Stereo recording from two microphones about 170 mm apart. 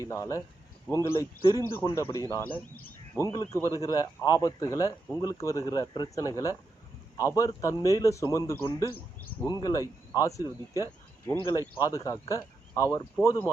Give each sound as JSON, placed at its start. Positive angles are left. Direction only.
{"t": 0.0, "sound": "a man's voice", "side_deg": 20}